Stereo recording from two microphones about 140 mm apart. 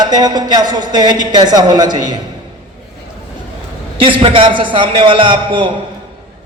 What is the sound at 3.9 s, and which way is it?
A man's voice, 35° right (ahead or behind).